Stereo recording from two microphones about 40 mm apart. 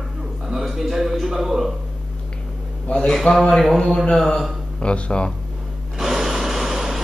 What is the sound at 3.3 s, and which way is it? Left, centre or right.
Speech, centre.